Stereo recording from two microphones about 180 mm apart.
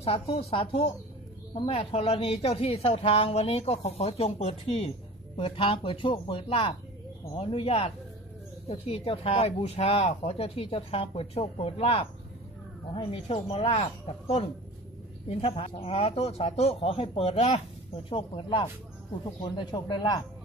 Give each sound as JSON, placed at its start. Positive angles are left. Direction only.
{"t": 0.0, "sound": "speech", "side_deg": 35}